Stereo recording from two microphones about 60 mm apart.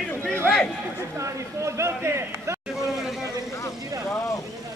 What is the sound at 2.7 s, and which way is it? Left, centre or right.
Vehicle, centre.